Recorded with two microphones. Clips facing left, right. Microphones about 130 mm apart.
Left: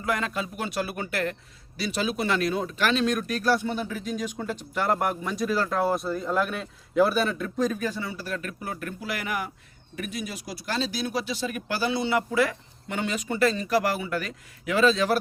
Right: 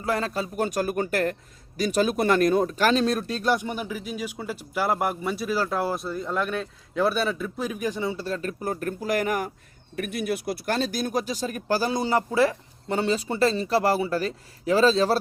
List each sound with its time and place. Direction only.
0.0 s speech: 35° right (ahead or behind)
9.9 s speech: 55° right (ahead or behind); by 15.2 s 30° right (ahead or behind)